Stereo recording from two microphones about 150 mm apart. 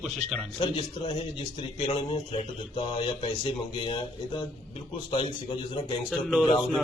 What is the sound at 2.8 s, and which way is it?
Speech, 35° left (ahead or behind).